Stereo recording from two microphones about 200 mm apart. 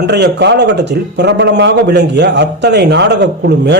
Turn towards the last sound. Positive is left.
turn(degrees=-55)  # may be behind; listen again after turning